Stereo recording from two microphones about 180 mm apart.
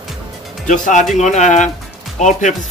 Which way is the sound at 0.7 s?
45° left (ahead or behind).